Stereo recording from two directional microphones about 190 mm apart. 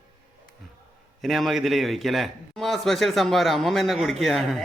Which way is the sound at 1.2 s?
Centre (ahead or behind).